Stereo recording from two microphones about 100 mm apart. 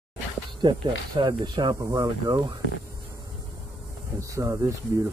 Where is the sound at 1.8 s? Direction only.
30° right (ahead or behind).